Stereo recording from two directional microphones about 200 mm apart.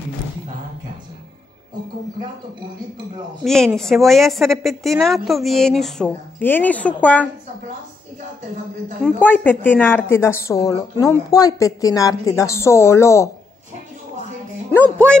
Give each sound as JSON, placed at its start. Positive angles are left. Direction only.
{"t": 3.4, "sound": "a woman's voice", "side_deg": 0}
{"t": 9.0, "sound": "a woman's voice", "side_deg": 10}
{"t": 14.7, "sound": "a woman's voice", "side_deg": 5}